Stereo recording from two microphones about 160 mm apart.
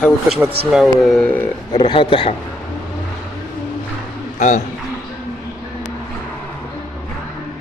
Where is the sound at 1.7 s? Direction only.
30° left (ahead or behind).